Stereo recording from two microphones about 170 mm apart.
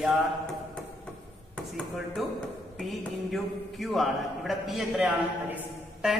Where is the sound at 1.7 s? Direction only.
Centre (ahead or behind).